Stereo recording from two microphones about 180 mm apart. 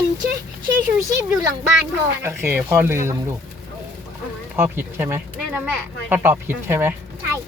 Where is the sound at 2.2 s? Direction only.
10° right (ahead or behind).